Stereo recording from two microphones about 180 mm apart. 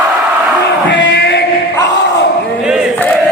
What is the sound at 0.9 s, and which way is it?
Crowd, 70° left (ahead or behind).